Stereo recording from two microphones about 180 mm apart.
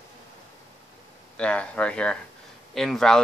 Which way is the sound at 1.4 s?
5° left (ahead or behind).